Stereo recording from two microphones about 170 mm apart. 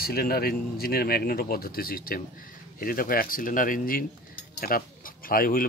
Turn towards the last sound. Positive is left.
turn(degrees=60)  # may be behind; listen again after turning